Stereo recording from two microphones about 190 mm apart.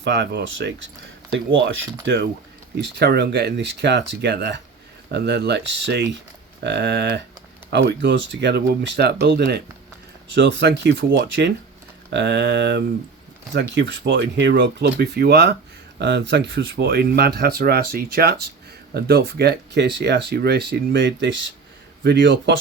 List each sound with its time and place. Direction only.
0.0 s speech: 60° right (ahead or behind)
2.8 s speech: 60° right (ahead or behind)